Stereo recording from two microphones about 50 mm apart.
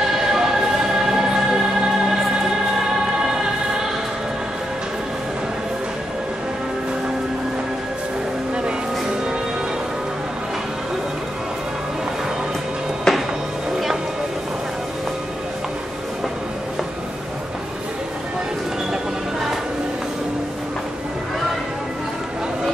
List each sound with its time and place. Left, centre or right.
0.2 s music: centre
13.1 s music: centre